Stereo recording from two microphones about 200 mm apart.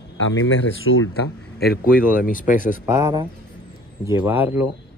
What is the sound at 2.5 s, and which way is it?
Speech, 40° left (ahead or behind).